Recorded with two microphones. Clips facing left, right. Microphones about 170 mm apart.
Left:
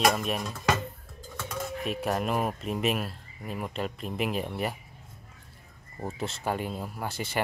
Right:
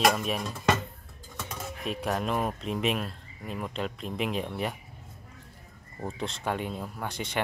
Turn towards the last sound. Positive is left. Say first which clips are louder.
# left 1 dB
turn(degrees=5)  # may be behind; listen again after turning